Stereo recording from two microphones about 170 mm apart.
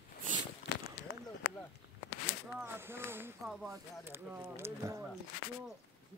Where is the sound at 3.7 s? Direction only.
15° right (ahead or behind).